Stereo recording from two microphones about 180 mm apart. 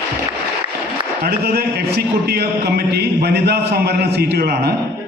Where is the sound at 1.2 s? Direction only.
60° right (ahead or behind).